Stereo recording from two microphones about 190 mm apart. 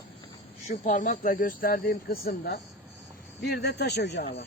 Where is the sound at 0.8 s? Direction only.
40° left (ahead or behind).